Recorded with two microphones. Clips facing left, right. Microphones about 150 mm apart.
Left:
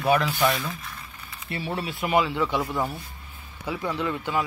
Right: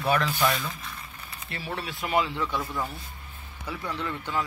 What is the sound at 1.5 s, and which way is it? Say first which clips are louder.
Speech: left 5 dB; 30° left (ahead or behind).